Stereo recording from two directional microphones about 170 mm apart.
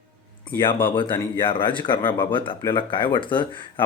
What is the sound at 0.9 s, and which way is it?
Speech, 30° left (ahead or behind).